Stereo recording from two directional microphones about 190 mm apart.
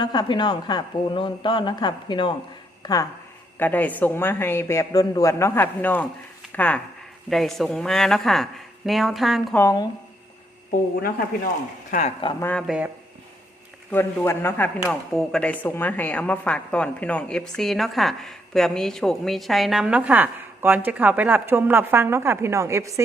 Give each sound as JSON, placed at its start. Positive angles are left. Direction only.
{"t": 0.0, "sound": "speech", "side_deg": 25}
{"t": 3.6, "sound": "a woman's voice", "side_deg": 10}
{"t": 9.6, "sound": "a woman's voice", "side_deg": 15}
{"t": 11.9, "sound": "speech", "side_deg": 40}
{"t": 12.4, "sound": "a woman's voice", "side_deg": 10}
{"t": 12.6, "sound": "a woman's voice", "side_deg": -5}
{"t": 13.9, "sound": "a woman's voice", "side_deg": 10}
{"t": 14.8, "sound": "a woman's voice", "side_deg": 0}